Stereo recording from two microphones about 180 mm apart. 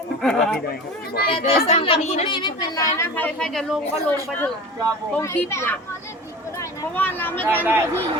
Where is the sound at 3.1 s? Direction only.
5° left (ahead or behind).